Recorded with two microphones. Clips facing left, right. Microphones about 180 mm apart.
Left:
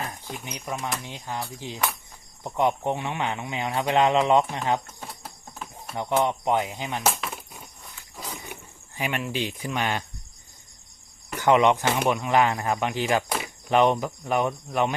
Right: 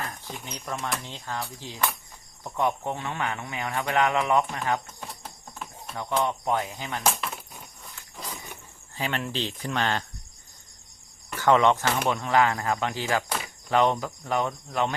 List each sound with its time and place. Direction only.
0.4 s speech: 15° left (ahead or behind)
4.9 s a sound: 5° left (ahead or behind)
6.0 s speech: 20° left (ahead or behind)
7.0 s a sound: centre (ahead or behind)
9.0 s speech: 15° left (ahead or behind)
11.3 s speech: 15° left (ahead or behind)